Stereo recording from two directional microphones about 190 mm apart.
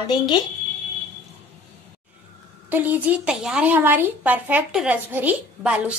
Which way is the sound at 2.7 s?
10° right (ahead or behind).